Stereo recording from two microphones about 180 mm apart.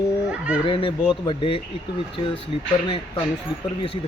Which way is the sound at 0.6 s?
30° left (ahead or behind).